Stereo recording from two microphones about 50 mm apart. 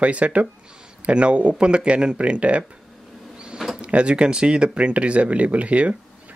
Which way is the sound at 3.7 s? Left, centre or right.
Right.